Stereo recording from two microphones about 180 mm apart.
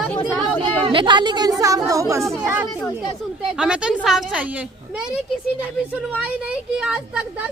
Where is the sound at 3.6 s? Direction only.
5° right (ahead or behind).